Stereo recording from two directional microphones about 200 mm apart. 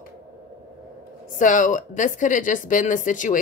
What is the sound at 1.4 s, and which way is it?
Speech, 40° left (ahead or behind).